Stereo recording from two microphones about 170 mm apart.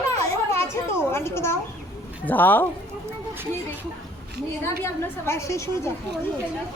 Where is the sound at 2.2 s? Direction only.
10° left (ahead or behind).